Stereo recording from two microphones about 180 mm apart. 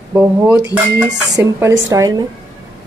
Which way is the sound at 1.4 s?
15° right (ahead or behind).